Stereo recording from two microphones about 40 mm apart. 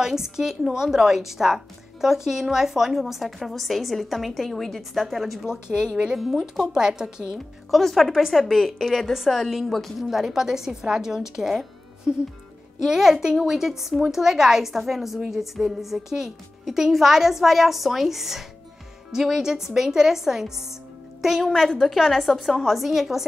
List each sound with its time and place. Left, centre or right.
0.0 s a woman's voice: centre
5.7 s speech: centre
6.1 s speech: centre
6.7 s a woman's voice: centre
7.3 s speech: centre
8.1 s speech: centre
10.0 s a woman's voice: centre
12.8 s a woman's voice: centre
22.8 s speech: centre